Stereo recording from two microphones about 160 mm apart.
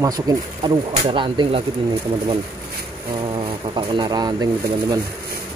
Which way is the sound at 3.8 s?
30° right (ahead or behind).